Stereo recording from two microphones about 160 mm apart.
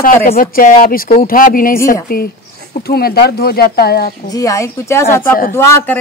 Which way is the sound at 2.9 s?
80° left.